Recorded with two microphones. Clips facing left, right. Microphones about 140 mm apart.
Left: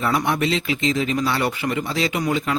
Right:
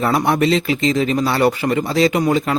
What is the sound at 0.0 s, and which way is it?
Speech, 35° right (ahead or behind).